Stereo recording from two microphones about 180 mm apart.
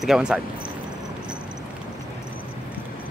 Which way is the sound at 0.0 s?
5° right (ahead or behind).